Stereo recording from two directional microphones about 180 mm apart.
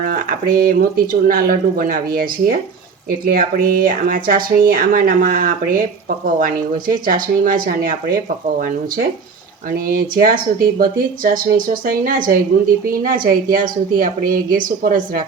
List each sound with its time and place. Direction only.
0.0 s speech: 50° right (ahead or behind)